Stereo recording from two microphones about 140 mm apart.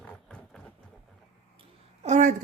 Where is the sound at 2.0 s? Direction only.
60° right (ahead or behind).